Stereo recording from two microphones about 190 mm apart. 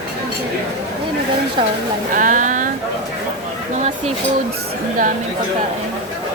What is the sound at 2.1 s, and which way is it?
Speech, 45° right (ahead or behind).